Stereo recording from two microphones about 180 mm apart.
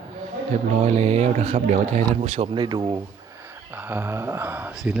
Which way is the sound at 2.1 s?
35° right (ahead or behind).